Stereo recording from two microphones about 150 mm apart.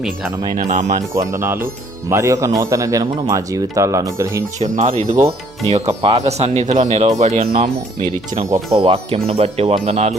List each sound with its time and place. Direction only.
0.5 s speech: 60° right (ahead or behind)
1.1 s speech: 20° right (ahead or behind)
4.9 s speech: 45° right (ahead or behind)